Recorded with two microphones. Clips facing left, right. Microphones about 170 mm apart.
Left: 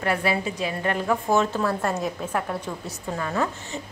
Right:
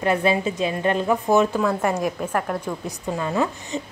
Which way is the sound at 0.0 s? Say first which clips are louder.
Right 4 dB; 20° right (ahead or behind).